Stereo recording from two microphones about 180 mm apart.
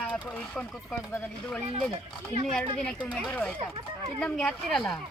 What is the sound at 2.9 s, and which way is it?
Speech, 5° right (ahead or behind).